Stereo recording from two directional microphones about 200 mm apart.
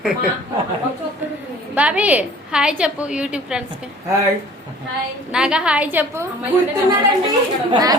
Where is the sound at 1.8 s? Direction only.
5° right (ahead or behind).